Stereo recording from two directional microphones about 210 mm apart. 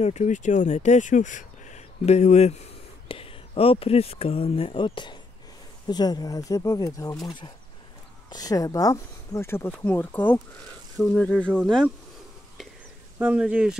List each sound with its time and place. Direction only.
0.0 s speech: 35° left (ahead or behind); by 11.9 s 5° left (ahead or behind)
13.2 s speech: 5° right (ahead or behind)